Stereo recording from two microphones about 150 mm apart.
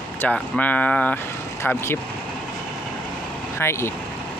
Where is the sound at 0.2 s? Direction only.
10° left (ahead or behind).